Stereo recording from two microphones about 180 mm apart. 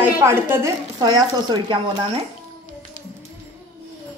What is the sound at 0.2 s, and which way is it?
A woman's voice, 15° right (ahead or behind).